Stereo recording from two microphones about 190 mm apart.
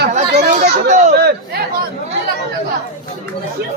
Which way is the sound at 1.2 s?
60° right (ahead or behind).